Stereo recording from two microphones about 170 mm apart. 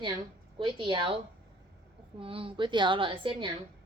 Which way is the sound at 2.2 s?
30° right (ahead or behind).